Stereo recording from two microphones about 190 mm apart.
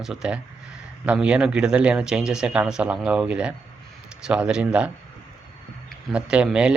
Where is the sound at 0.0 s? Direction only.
5° right (ahead or behind).